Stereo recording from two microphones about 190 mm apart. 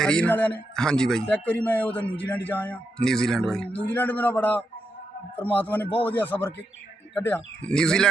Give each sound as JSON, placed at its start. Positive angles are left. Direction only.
{"t": 0.0, "sound": "a man's voice", "side_deg": 5}